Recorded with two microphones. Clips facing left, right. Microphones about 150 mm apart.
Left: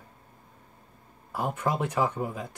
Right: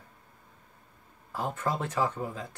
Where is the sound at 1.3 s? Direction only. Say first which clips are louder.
Left 3 dB; 15° left (ahead or behind).